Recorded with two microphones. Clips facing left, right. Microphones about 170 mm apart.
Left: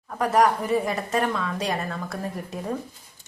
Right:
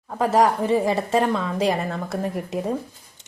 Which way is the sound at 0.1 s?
25° right (ahead or behind).